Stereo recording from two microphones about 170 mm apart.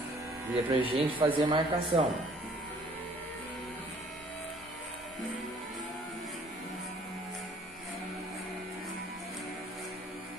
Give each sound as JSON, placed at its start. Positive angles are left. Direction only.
{"t": 0.7, "sound": "speech", "side_deg": -30}